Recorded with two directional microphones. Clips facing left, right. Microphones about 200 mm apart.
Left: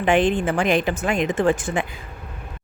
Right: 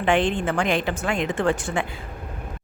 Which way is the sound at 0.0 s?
15° left (ahead or behind).